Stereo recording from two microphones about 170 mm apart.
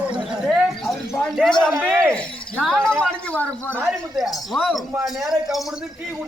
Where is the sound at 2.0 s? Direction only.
5° left (ahead or behind).